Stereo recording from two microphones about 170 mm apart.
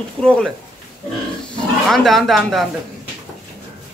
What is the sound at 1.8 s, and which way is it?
Speech, centre (ahead or behind).